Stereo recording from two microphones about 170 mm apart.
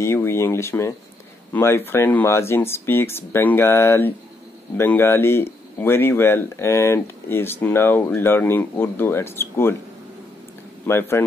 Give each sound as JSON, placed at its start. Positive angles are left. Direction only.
{"t": 0.0, "sound": "speech", "side_deg": 15}
{"t": 10.9, "sound": "speech", "side_deg": 15}